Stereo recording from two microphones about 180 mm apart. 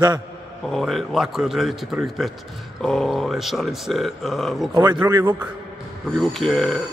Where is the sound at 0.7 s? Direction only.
Centre (ahead or behind).